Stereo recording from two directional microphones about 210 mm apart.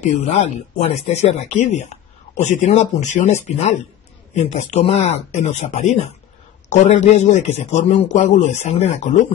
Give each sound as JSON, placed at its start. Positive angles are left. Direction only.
{"t": 0.0, "sound": "speech", "side_deg": 35}